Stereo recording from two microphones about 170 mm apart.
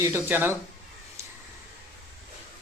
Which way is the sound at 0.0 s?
10° right (ahead or behind).